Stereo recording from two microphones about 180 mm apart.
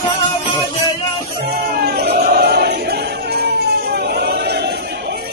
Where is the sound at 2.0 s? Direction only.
60° right (ahead or behind).